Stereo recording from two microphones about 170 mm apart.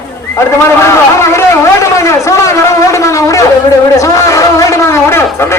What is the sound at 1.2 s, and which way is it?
A man's voice, 15° left (ahead or behind).